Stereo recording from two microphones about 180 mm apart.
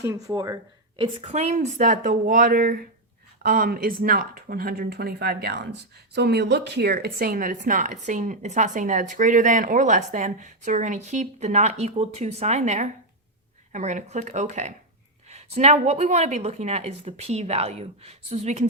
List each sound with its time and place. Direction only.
0.0 s speech: 15° right (ahead or behind)
0.9 s a woman's voice: 30° right (ahead or behind)
1.3 s a woman's voice: 40° right (ahead or behind)